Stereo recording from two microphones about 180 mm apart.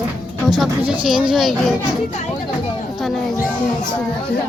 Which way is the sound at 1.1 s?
5° right (ahead or behind).